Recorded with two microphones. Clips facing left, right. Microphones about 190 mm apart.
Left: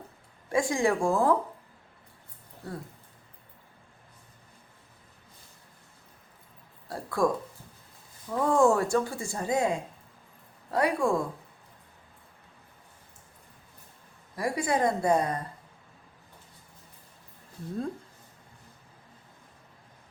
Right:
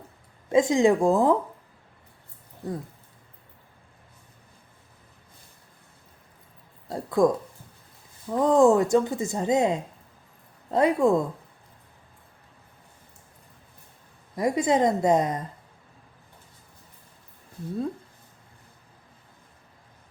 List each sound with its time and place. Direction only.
0.4 s speech: 20° right (ahead or behind)
2.6 s speech: 20° right (ahead or behind)
6.8 s speech: 20° right (ahead or behind)
8.3 s speech: 20° right (ahead or behind)
14.3 s speech: 20° right (ahead or behind)